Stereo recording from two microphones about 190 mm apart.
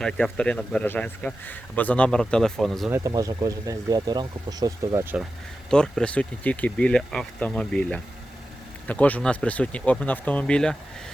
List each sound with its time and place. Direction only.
0.0 s speech: 5° left (ahead or behind)
2.9 s speech: 20° right (ahead or behind)
5.7 s speech: 5° left (ahead or behind)